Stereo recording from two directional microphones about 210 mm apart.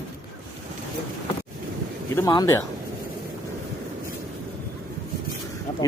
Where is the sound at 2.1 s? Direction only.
15° left (ahead or behind).